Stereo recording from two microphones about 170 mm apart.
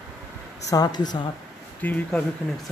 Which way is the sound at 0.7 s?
25° left (ahead or behind).